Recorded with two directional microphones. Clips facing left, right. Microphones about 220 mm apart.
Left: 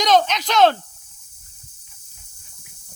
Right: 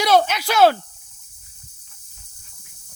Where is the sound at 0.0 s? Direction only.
10° right (ahead or behind).